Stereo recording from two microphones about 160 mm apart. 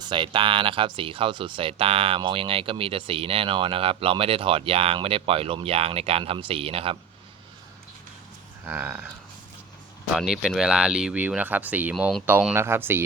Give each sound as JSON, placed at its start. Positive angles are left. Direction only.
{"t": 0.0, "sound": "speech", "side_deg": -30}
{"t": 8.6, "sound": "speech", "side_deg": -10}
{"t": 10.2, "sound": "speech", "side_deg": -5}